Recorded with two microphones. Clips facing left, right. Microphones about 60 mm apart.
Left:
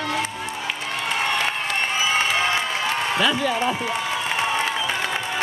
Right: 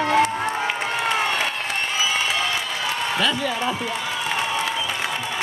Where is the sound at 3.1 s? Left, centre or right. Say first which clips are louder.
Left 1 dB; centre.